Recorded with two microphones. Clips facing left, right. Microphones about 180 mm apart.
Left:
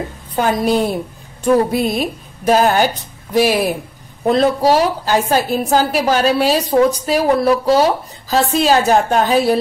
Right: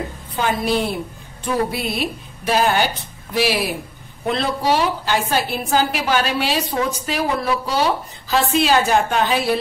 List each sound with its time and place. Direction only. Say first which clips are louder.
0.4 s a woman's voice: left 5 dB; 45° left (ahead or behind)